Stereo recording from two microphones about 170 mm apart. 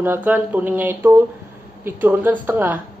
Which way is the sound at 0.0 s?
10° right (ahead or behind).